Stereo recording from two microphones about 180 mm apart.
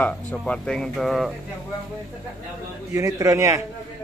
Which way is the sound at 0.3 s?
5° left (ahead or behind).